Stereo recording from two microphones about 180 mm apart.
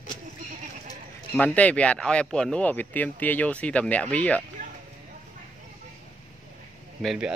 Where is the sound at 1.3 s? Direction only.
10° left (ahead or behind).